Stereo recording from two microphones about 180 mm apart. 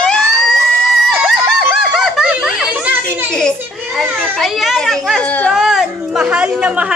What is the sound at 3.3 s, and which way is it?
Speech, 5° left (ahead or behind).